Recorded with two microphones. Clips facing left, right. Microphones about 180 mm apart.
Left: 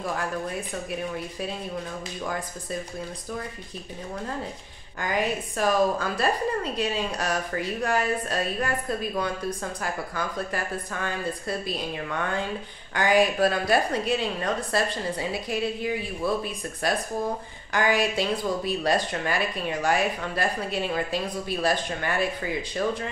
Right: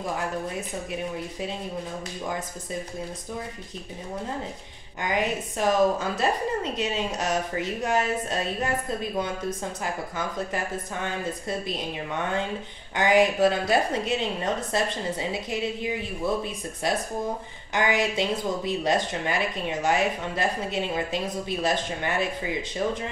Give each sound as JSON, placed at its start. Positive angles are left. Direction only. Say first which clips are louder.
{"t": 5.0, "sound": "speech", "louder": "even", "side_deg": -20}